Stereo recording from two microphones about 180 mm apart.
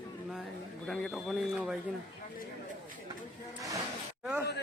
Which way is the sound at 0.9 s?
Centre (ahead or behind).